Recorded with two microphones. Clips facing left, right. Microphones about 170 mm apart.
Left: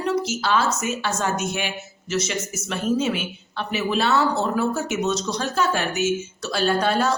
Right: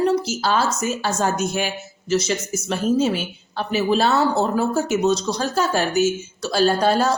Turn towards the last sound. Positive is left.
turn(degrees=-35)  # may be behind; listen again after turning